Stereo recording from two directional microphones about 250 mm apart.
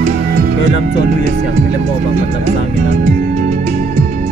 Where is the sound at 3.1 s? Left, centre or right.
Right.